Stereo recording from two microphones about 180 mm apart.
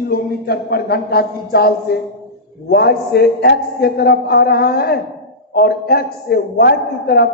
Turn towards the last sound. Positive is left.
turn(degrees=60)  # may be behind; listen again after turning